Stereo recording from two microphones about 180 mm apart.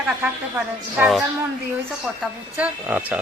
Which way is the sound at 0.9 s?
5° right (ahead or behind).